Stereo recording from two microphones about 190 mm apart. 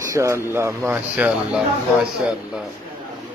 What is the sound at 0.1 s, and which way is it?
Speech, 15° right (ahead or behind).